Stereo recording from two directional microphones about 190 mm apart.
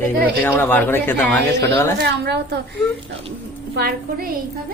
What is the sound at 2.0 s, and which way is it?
Speech, 60° right (ahead or behind).